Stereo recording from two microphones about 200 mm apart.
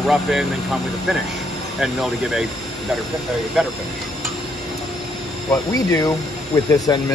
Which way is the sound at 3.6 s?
Centre (ahead or behind).